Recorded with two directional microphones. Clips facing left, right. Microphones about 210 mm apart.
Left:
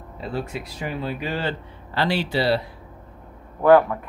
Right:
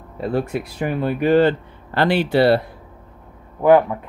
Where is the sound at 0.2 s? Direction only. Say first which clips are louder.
Right 7 dB; 55° right (ahead or behind).